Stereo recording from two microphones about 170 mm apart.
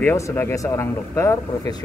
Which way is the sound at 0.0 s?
15° left (ahead or behind).